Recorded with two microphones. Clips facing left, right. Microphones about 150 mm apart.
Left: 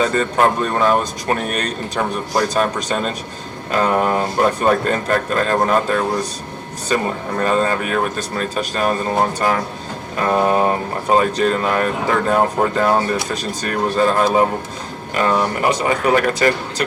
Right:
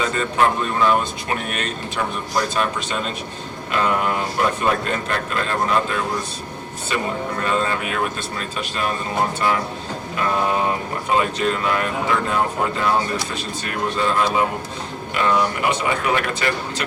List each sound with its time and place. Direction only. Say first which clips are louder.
0.0 s a man's voice: left 3 dB; 40° left (ahead or behind)
10.2 s a man's voice: left 5 dB; 40° left (ahead or behind)